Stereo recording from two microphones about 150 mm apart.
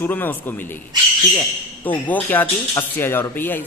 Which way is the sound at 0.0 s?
10° left (ahead or behind).